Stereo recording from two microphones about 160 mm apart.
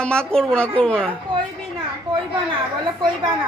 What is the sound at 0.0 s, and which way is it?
A woman's voice, 5° left (ahead or behind).